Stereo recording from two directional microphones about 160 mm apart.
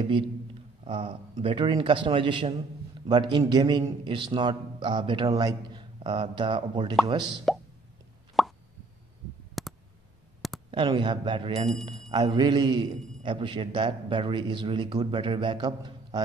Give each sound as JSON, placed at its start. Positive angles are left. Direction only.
{"t": 0.8, "sound": "a man's voice", "side_deg": -30}
{"t": 8.4, "sound": "plop", "side_deg": 0}
{"t": 9.6, "sound": "clicking", "side_deg": 0}
{"t": 10.7, "sound": "a man's voice", "side_deg": -30}
{"t": 12.1, "sound": "a man's voice", "side_deg": -25}